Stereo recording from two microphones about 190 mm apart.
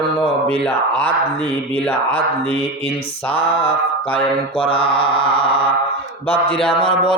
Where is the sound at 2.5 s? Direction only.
30° left (ahead or behind).